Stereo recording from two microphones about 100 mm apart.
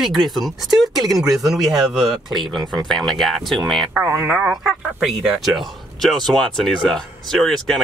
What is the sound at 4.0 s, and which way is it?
Speech, 25° right (ahead or behind).